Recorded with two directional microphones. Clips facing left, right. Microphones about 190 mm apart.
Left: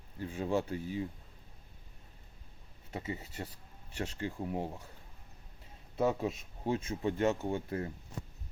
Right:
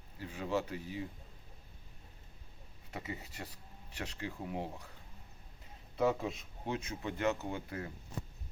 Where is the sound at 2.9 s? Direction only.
25° left (ahead or behind).